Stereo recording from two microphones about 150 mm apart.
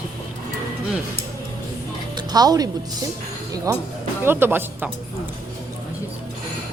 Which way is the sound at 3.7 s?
25° right (ahead or behind).